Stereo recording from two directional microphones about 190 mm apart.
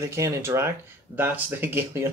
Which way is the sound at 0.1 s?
15° right (ahead or behind).